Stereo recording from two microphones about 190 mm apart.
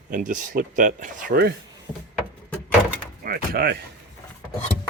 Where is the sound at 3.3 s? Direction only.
55° right (ahead or behind).